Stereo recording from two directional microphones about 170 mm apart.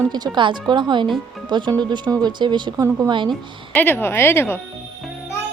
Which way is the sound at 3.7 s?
10° left (ahead or behind).